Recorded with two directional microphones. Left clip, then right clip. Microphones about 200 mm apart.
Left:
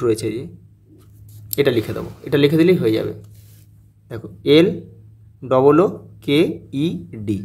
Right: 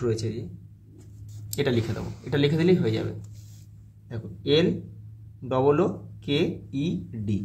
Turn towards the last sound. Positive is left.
turn(degrees=45)  # may be behind; listen again after turning